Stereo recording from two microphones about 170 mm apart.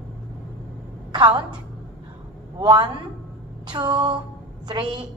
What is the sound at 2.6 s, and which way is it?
A woman's voice, 25° right (ahead or behind).